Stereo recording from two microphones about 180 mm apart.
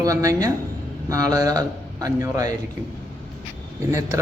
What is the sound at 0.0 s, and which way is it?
A man's voice, 20° right (ahead or behind).